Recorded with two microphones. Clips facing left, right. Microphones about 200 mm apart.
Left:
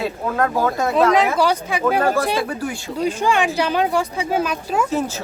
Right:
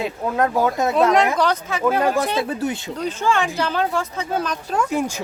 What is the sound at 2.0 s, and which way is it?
Speech, 15° right (ahead or behind).